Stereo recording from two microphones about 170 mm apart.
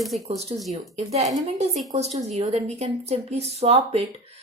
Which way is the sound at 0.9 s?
40° right (ahead or behind).